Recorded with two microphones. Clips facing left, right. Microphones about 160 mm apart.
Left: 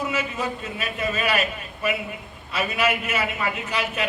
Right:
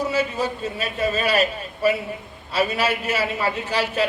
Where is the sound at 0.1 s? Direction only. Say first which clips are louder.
Right 4 dB; 30° right (ahead or behind).